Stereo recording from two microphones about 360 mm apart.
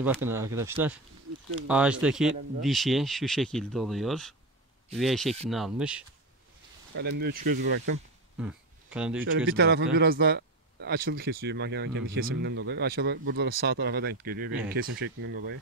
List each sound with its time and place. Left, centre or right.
0.0 s speech: centre
6.9 s speech: right
8.4 s a sound: centre
9.5 s speech: right